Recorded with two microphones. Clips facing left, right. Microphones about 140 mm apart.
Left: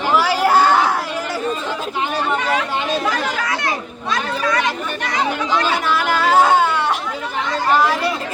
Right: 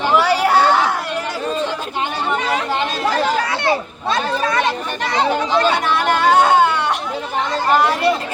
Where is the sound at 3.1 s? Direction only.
30° right (ahead or behind).